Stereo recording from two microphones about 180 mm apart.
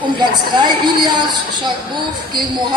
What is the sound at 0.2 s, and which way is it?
A woman's voice, 25° right (ahead or behind).